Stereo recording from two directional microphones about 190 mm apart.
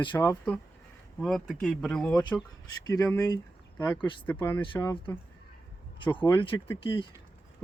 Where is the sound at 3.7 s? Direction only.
10° left (ahead or behind).